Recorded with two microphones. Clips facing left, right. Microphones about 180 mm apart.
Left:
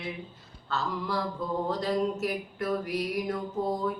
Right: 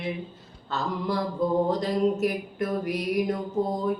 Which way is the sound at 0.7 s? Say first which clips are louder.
Right 3 dB; 20° right (ahead or behind).